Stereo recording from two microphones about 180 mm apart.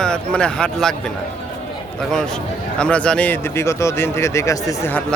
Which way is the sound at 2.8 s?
5° left (ahead or behind).